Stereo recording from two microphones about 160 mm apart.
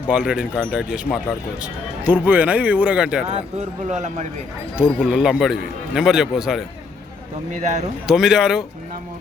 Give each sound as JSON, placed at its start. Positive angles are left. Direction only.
{"t": 0.1, "sound": "a man's voice", "side_deg": -5}
{"t": 3.6, "sound": "speech", "side_deg": -45}
{"t": 4.9, "sound": "a man's voice", "side_deg": -5}
{"t": 7.6, "sound": "speech", "side_deg": -45}
{"t": 8.0, "sound": "a man's voice", "side_deg": -5}